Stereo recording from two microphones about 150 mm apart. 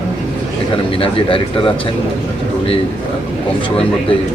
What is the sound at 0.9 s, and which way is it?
Speech, 40° left (ahead or behind).